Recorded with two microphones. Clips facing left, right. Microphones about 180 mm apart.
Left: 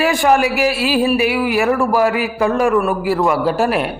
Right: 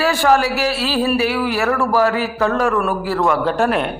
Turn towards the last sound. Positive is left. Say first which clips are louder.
# left 1 dB
turn(degrees=5)  # may be behind; listen again after turning